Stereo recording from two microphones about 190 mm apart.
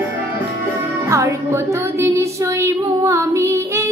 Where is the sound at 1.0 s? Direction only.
15° right (ahead or behind).